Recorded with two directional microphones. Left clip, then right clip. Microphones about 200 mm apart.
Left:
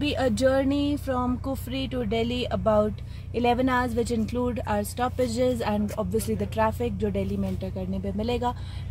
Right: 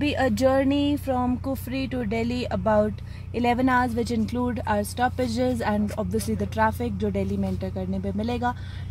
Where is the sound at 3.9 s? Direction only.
20° left (ahead or behind).